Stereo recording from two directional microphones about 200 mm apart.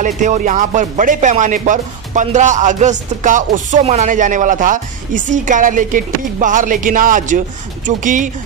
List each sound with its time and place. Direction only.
0.0 s speech: 40° right (ahead or behind)